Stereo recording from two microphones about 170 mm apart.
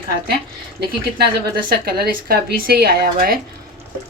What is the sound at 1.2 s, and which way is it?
Speech, 65° right (ahead or behind).